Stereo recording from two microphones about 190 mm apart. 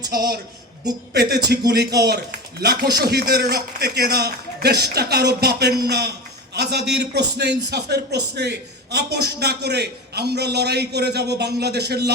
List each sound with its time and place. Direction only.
0.1 s a woman's voice: 55° right (ahead or behind)